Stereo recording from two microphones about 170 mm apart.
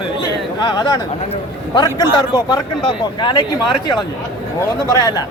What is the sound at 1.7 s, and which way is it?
A man's voice, 25° left (ahead or behind).